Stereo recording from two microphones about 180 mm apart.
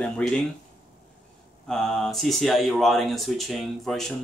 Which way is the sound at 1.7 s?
Centre (ahead or behind).